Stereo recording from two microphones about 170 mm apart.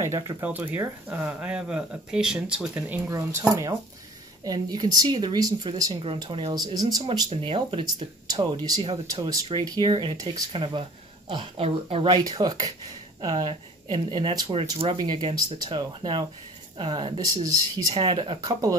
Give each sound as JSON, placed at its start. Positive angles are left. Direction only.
{"t": 0.0, "sound": "speech", "side_deg": -15}